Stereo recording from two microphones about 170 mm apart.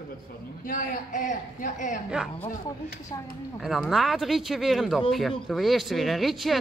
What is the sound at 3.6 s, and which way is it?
Speech, centre (ahead or behind).